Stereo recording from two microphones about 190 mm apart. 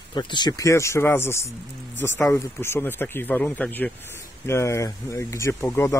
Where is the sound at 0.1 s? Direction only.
25° left (ahead or behind).